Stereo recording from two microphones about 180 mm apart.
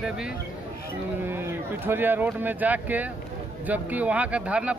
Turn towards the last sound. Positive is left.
turn(degrees=-5)  # may be behind; listen again after turning